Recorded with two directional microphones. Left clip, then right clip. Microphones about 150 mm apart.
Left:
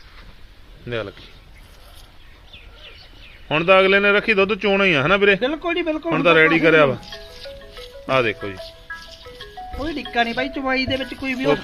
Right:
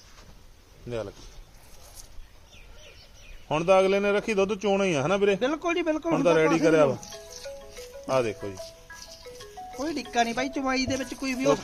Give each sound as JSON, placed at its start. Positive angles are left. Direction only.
{"t": 3.5, "sound": "speech", "side_deg": -15}
{"t": 5.4, "sound": "speech", "side_deg": -35}
{"t": 6.1, "sound": "speech", "side_deg": -10}
{"t": 8.0, "sound": "speech", "side_deg": -5}
{"t": 8.5, "sound": "music", "side_deg": -25}
{"t": 9.7, "sound": "speech", "side_deg": -30}